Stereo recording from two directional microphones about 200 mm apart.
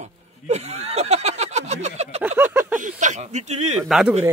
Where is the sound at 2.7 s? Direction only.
40° right (ahead or behind).